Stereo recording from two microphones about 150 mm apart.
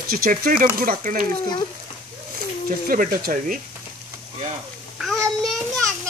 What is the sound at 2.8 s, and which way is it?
Speech, 70° right (ahead or behind).